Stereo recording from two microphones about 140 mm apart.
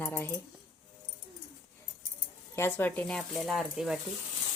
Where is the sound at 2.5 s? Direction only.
15° left (ahead or behind); by 4.0 s centre (ahead or behind).